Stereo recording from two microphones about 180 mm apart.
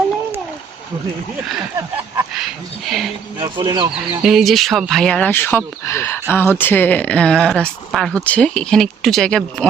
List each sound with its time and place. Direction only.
2.1 s speech: centre (ahead or behind)
3.4 s speech: 25° right (ahead or behind)
4.1 s speech: 5° right (ahead or behind)